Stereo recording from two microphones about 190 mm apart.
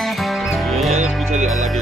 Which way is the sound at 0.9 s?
40° right (ahead or behind).